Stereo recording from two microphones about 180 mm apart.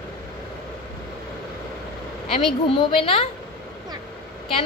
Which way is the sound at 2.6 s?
30° left (ahead or behind).